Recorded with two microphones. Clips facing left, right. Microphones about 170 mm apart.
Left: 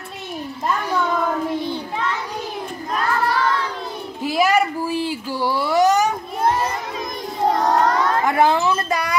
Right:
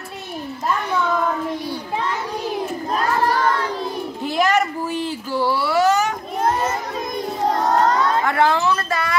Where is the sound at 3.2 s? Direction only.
45° right (ahead or behind).